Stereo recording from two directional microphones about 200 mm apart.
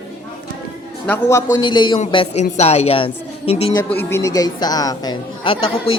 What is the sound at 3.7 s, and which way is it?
A woman's voice, 10° left (ahead or behind).